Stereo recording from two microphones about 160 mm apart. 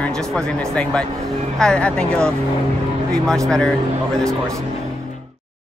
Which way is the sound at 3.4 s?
5° left (ahead or behind).